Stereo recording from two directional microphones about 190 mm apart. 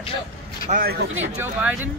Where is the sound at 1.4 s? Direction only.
10° right (ahead or behind).